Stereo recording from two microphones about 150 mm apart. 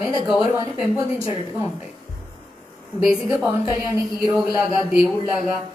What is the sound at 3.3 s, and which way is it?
Speech, 20° right (ahead or behind).